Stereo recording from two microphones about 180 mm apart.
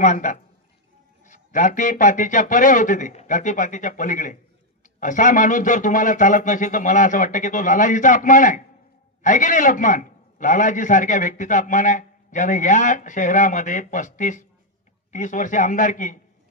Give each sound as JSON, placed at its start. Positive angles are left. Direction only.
{"t": 0.0, "sound": "a man's voice", "side_deg": 45}